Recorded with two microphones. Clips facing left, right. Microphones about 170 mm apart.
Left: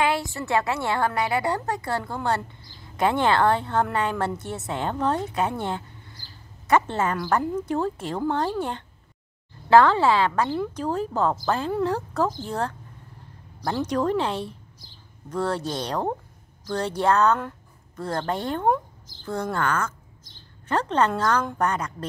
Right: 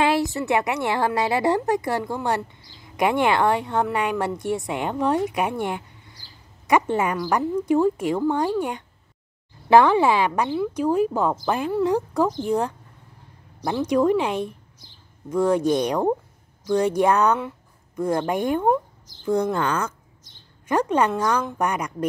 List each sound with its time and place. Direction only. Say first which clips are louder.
0.0 s a woman's voice: right 4 dB; 20° right (ahead or behind)
13.8 s a woman's voice: right 5 dB; 10° right (ahead or behind)